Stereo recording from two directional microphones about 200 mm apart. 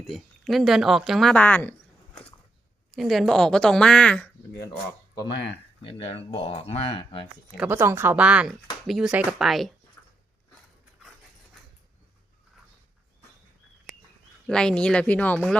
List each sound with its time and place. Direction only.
0.1 s speech: centre (ahead or behind)
2.9 s speech: centre (ahead or behind)
5.8 s speech: 30° left (ahead or behind)
7.5 s speech: 10° right (ahead or behind)
10.0 s dog: 15° left (ahead or behind)
14.4 s speech: 5° left (ahead or behind)